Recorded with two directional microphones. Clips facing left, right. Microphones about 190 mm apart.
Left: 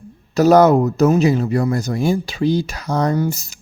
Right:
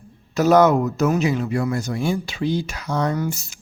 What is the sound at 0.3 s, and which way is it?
Speech, 35° left (ahead or behind).